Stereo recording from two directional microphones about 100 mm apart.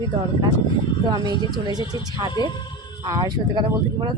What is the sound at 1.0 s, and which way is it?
A woman's voice, 40° right (ahead or behind).